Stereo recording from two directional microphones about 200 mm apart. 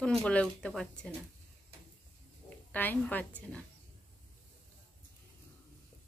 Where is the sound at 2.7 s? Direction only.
10° left (ahead or behind).